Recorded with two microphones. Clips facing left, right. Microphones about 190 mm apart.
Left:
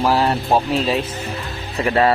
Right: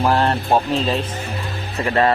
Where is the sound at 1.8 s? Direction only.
15° left (ahead or behind).